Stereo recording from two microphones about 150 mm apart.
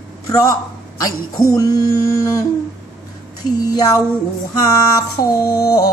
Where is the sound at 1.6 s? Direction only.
25° left (ahead or behind).